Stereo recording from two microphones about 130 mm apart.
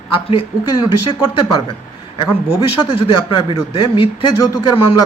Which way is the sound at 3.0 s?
40° left (ahead or behind).